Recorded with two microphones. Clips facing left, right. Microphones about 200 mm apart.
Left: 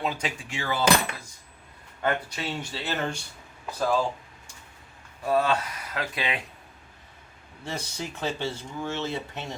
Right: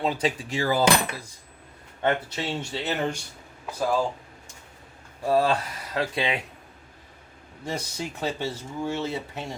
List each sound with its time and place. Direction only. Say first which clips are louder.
0.0 s speech: right 5 dB; 30° right (ahead or behind)
2.0 s speech: right 3 dB; 25° right (ahead or behind); by 4.0 s 10° right (ahead or behind)
5.2 s speech: right 2 dB; 30° right (ahead or behind)
7.7 s speech: right 2 dB; 10° right (ahead or behind)